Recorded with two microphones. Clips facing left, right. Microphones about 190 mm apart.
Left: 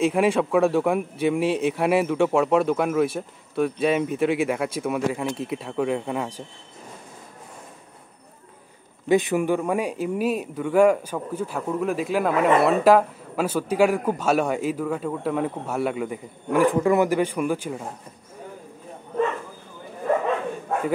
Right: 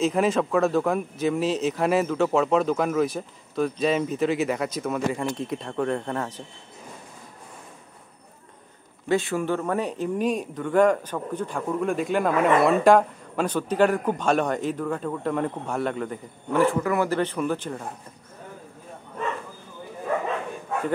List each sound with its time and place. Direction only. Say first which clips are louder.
0.0 s speech: left 2 dB; 10° left (ahead or behind)
1.4 s speech: left 2 dB; 60° left (ahead or behind)
1.7 s speech: left 2 dB; 10° left (ahead or behind)
9.1 s speech: left 4 dB; 15° left (ahead or behind)
16.8 s speech: left 5 dB; 25° left (ahead or behind)
17.1 s speech: left 2 dB; 10° left (ahead or behind)